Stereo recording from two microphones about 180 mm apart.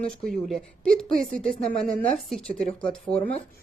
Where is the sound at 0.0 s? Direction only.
Centre (ahead or behind).